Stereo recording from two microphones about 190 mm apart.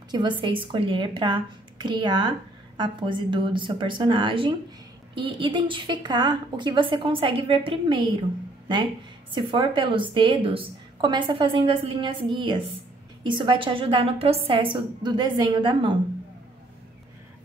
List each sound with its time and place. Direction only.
0.1 s a woman's voice: 25° right (ahead or behind)
9.3 s a woman's voice: 25° right (ahead or behind)